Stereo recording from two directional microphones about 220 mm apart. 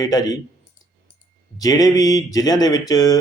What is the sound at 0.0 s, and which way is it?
Speech, 15° left (ahead or behind).